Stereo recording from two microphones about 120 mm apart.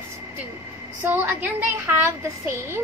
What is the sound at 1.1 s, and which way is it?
A woman's voice, 15° right (ahead or behind).